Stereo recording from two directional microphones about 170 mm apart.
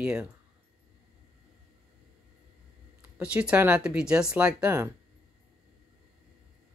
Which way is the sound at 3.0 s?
5° right (ahead or behind).